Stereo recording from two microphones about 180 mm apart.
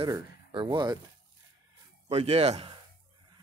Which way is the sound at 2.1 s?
35° right (ahead or behind).